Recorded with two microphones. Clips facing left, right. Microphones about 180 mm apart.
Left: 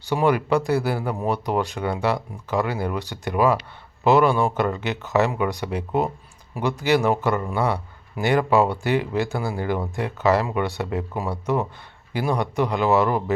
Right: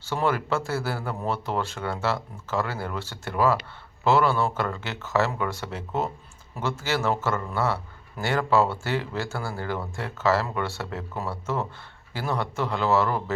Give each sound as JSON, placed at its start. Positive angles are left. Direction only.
{"t": 0.0, "sound": "speech", "side_deg": 15}